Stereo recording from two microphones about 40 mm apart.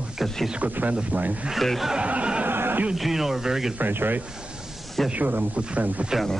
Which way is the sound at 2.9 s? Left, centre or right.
Centre.